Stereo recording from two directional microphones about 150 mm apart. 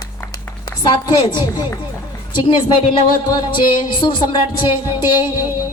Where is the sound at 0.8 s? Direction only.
30° left (ahead or behind).